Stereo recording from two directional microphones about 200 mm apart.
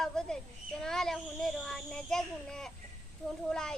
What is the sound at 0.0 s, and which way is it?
A child's voice, 5° left (ahead or behind).